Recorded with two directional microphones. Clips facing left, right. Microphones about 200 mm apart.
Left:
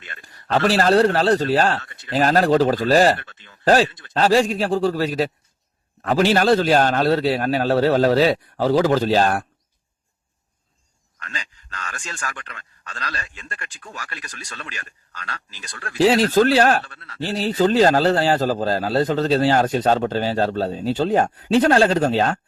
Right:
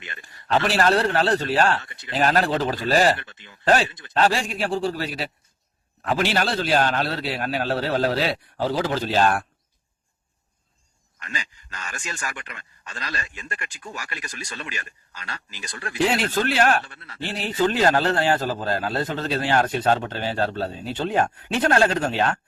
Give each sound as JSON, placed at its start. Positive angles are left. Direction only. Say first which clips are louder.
{"t": 0.2, "sound": "a man's voice", "louder": "left 3 dB", "side_deg": 40}
{"t": 11.7, "sound": "a man's voice", "louder": "left 1 dB", "side_deg": -10}
{"t": 16.0, "sound": "speech", "louder": "left 7 dB", "side_deg": 35}